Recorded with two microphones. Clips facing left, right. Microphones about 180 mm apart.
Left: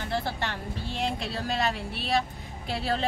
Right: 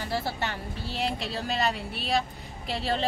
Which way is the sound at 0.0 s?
5° right (ahead or behind).